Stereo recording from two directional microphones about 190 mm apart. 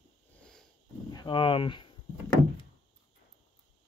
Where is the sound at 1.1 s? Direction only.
25° left (ahead or behind).